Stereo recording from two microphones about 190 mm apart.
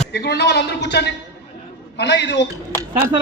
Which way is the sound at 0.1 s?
60° left (ahead or behind).